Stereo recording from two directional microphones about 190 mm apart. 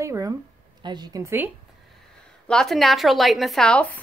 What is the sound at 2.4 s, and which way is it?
A woman's voice, 5° left (ahead or behind).